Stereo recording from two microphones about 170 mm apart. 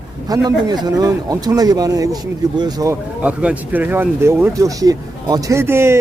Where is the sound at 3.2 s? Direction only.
5° right (ahead or behind).